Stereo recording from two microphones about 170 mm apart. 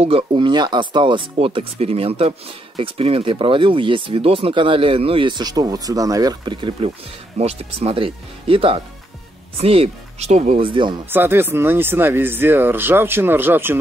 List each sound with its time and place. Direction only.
0.0 s speech: 30° right (ahead or behind)
7.3 s speech: 40° right (ahead or behind)
10.7 s speech: 30° right (ahead or behind)
11.1 s speech: 15° right (ahead or behind)